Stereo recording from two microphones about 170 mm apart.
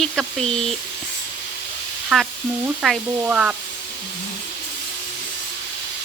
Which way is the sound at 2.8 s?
5° right (ahead or behind).